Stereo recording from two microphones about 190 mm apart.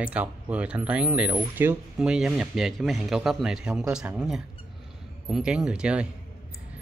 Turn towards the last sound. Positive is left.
turn(degrees=-5)  # may be behind; listen again after turning